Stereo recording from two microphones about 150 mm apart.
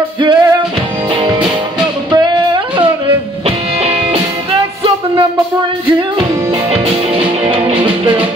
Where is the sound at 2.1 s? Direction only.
30° right (ahead or behind).